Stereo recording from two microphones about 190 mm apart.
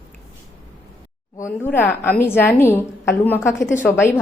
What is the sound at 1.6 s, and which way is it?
A woman's voice, 10° left (ahead or behind).